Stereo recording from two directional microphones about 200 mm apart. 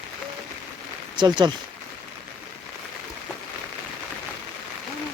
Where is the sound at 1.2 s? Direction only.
20° right (ahead or behind).